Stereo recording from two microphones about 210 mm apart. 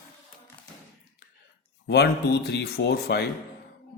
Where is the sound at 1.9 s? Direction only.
50° left (ahead or behind).